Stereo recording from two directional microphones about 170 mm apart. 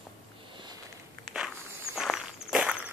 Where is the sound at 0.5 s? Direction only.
30° right (ahead or behind).